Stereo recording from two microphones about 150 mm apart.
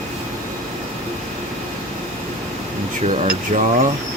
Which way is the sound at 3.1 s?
55° right (ahead or behind).